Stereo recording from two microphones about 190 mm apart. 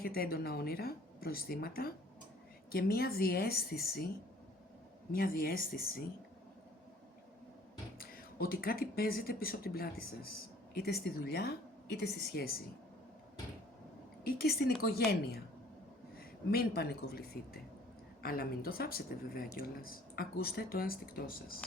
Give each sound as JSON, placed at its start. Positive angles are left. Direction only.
{"t": 0.0, "sound": "speech", "side_deg": 50}
{"t": 5.1, "sound": "speech", "side_deg": 50}
{"t": 7.9, "sound": "a woman's voice", "side_deg": 50}
{"t": 14.3, "sound": "a woman's voice", "side_deg": 55}